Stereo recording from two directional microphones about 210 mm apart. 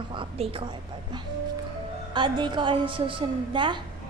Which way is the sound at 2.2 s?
20° right (ahead or behind).